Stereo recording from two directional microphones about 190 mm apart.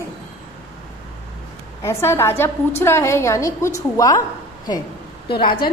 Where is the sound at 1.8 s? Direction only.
15° left (ahead or behind).